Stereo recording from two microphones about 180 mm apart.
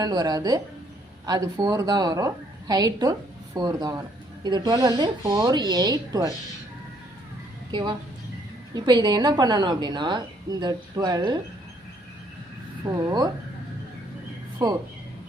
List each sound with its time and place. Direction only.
0.0 s a woman's voice: 20° right (ahead or behind)
7.7 s a woman's voice: 25° right (ahead or behind)
12.9 s a woman's voice: 20° right (ahead or behind)
14.6 s a woman's voice: 20° right (ahead or behind)